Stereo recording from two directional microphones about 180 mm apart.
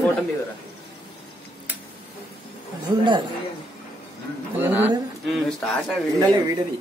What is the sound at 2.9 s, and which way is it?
Speech, 20° right (ahead or behind).